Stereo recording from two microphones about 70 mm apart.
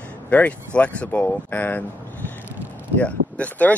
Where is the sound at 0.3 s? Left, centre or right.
Left.